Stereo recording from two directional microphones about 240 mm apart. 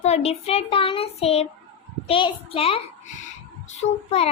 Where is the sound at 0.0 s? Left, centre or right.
Left.